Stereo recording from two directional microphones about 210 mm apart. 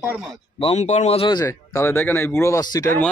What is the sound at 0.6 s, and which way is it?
Speech, 30° left (ahead or behind).